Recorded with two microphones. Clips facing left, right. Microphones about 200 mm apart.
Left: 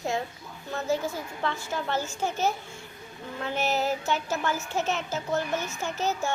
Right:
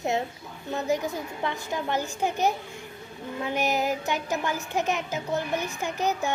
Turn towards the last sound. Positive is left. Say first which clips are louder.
# right 2 dB
turn(degrees=-15)  # may be behind; listen again after turning